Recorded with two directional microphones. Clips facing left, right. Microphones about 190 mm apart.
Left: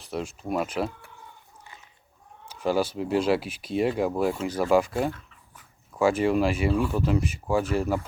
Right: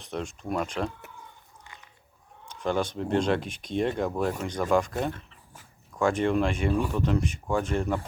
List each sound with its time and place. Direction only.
0.1 s speech: 5° left (ahead or behind)
2.5 s speech: 5° left (ahead or behind)
5.9 s speech: 5° left (ahead or behind)